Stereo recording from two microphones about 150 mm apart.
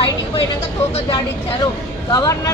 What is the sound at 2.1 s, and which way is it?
Speech, 25° left (ahead or behind).